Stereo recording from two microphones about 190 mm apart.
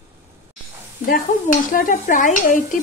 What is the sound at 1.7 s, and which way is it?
Speech, 45° left (ahead or behind).